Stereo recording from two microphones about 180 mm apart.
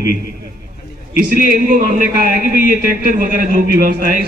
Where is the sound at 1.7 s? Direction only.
50° right (ahead or behind).